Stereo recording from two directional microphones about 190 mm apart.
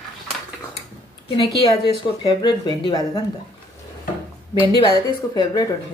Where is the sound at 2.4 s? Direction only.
20° left (ahead or behind).